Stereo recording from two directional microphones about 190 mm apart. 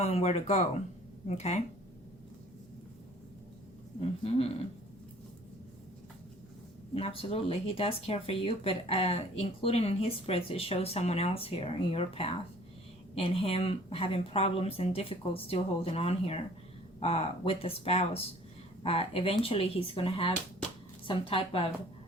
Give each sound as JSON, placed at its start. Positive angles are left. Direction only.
{"t": 0.0, "sound": "speech", "side_deg": 35}
{"t": 4.0, "sound": "speech", "side_deg": 30}
{"t": 6.9, "sound": "speech", "side_deg": 30}